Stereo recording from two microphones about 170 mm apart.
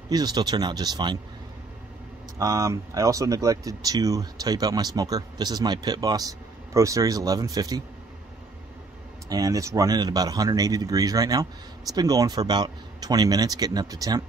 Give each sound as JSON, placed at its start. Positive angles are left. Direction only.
{"t": 0.1, "sound": "speech", "side_deg": -25}
{"t": 2.3, "sound": "speech", "side_deg": -20}
{"t": 9.3, "sound": "speech", "side_deg": -20}